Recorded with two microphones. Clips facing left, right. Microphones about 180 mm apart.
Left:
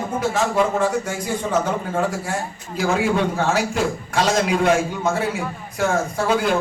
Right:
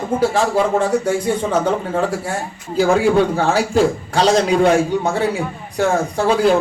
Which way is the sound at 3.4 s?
30° right (ahead or behind).